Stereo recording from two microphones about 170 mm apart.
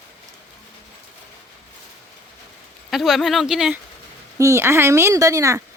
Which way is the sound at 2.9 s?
Centre (ahead or behind).